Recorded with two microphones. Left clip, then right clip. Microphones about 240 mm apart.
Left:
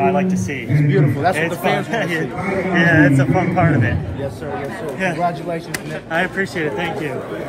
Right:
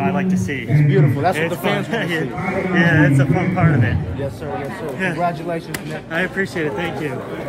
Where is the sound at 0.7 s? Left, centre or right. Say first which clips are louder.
Even; right.